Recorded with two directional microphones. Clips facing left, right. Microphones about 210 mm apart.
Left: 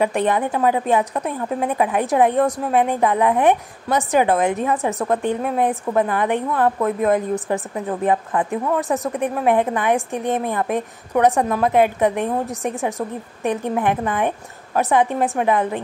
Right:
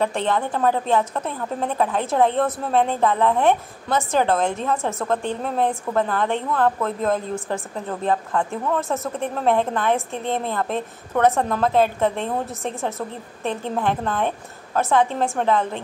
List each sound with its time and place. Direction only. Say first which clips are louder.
0.0 s a woman's voice: left 3 dB; 15° left (ahead or behind)